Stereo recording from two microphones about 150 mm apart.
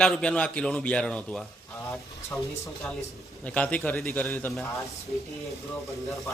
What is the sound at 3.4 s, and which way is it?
A man's voice, 10° left (ahead or behind).